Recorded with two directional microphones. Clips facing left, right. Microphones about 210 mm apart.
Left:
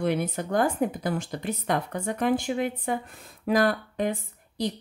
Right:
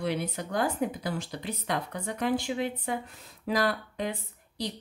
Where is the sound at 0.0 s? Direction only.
50° left (ahead or behind).